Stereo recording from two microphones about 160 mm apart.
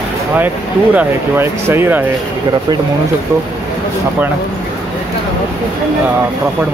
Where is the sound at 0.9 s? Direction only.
15° right (ahead or behind).